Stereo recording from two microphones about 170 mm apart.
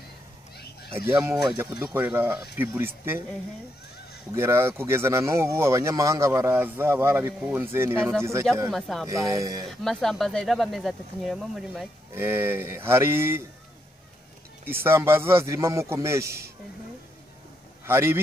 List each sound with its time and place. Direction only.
0.9 s speech: 15° right (ahead or behind)
4.3 s speech: 15° right (ahead or behind)
8.6 s speech: centre (ahead or behind)
9.0 s speech: 20° right (ahead or behind)
9.7 s speech: centre (ahead or behind)
12.1 s speech: 15° right (ahead or behind)
14.7 s speech: 15° right (ahead or behind)
17.8 s speech: 15° right (ahead or behind)